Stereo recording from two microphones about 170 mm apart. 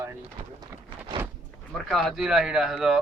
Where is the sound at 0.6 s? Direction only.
25° right (ahead or behind).